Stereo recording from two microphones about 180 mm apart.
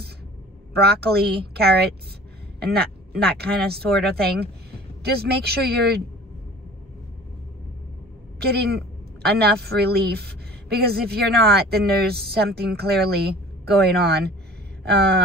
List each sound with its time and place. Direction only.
0.7 s a woman's voice: 65° right (ahead or behind)
3.3 s a woman's voice: 60° right (ahead or behind)
8.4 s a woman's voice: 60° right (ahead or behind)